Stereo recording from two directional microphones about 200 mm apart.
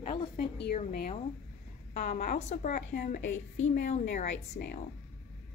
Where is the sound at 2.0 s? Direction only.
35° left (ahead or behind).